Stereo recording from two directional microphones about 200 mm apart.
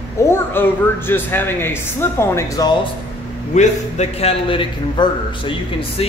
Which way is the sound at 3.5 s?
30° left (ahead or behind).